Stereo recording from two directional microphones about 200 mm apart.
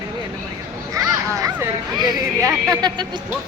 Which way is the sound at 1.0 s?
15° right (ahead or behind).